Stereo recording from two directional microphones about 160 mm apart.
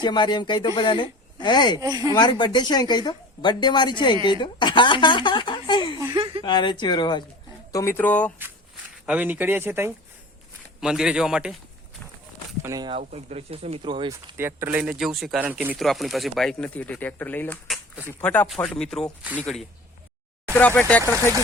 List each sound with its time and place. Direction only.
0.0 s a woman's voice: 30° left (ahead or behind)
1.8 s speech: 25° right (ahead or behind)
2.1 s a woman's voice: 30° left (ahead or behind)
6.1 s a sound: 30° right (ahead or behind)
6.4 s a woman's voice: 30° left (ahead or behind); by 8.3 s 10° left (ahead or behind)
9.0 s speech: 10° right (ahead or behind)
12.6 s speech: 25° right (ahead or behind)
12.9 s speech: 40° right (ahead or behind)
14.3 s speech: 15° right (ahead or behind); by 21.0 s 10° left (ahead or behind)